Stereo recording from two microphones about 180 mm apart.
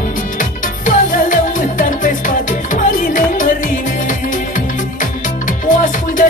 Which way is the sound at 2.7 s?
45° left (ahead or behind).